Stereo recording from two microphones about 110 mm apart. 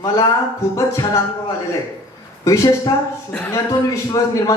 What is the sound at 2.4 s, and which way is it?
Speech, 30° left (ahead or behind).